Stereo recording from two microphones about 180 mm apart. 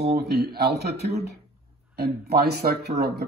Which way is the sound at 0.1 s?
60° right (ahead or behind).